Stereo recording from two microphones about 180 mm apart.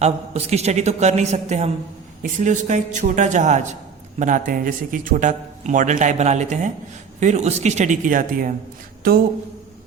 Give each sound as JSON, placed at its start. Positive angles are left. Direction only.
{"t": 0.0, "sound": "a man's voice", "side_deg": -35}